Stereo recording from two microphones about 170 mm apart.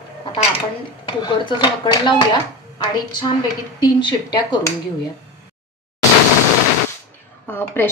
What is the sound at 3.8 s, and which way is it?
Speech, 25° left (ahead or behind).